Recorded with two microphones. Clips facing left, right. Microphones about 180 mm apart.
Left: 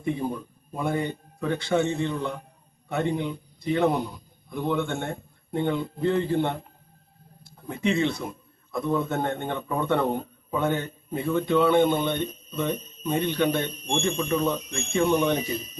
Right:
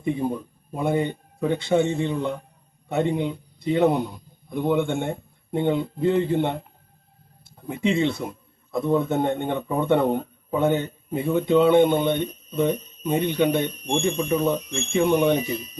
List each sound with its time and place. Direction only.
0.0 s a man's voice: 20° right (ahead or behind)